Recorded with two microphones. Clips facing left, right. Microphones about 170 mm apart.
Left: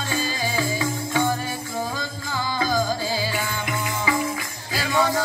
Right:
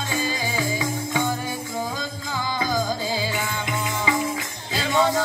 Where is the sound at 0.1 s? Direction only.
15° right (ahead or behind).